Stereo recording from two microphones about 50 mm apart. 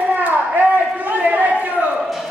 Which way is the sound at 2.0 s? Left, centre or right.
Centre.